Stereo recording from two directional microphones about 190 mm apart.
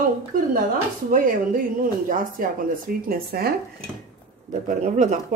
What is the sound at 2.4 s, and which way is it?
Speech, 50° right (ahead or behind).